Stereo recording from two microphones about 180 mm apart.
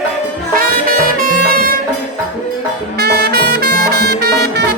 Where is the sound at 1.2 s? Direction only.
55° right (ahead or behind).